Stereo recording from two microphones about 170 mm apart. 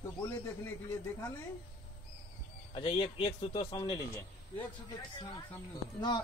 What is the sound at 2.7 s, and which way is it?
Speech, 30° left (ahead or behind).